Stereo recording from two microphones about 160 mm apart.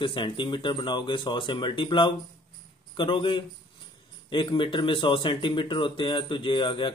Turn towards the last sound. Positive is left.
turn(degrees=30)  # may be behind; listen again after turning